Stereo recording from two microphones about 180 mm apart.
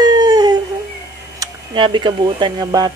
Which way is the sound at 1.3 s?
25° right (ahead or behind).